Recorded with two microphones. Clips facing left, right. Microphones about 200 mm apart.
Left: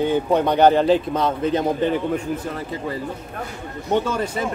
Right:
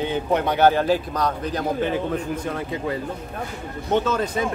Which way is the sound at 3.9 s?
10° left (ahead or behind).